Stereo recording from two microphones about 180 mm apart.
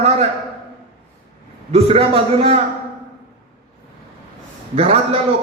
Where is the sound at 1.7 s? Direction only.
35° right (ahead or behind).